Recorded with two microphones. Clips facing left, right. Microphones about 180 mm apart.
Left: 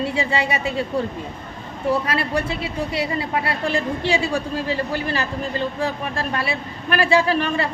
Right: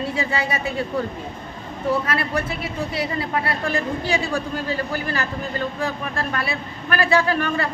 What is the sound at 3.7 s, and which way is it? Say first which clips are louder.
Speech: left 3 dB; 30° left (ahead or behind).